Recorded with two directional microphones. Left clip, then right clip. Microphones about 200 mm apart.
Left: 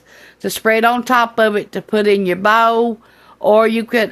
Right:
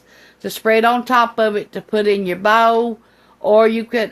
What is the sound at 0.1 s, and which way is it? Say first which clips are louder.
Speech: left 4 dB; 35° left (ahead or behind).